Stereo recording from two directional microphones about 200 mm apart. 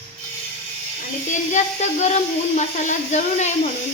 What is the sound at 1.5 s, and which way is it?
Speech, 35° left (ahead or behind).